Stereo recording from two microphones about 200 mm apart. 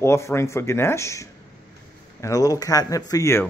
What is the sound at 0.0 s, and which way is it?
Speech, 15° left (ahead or behind).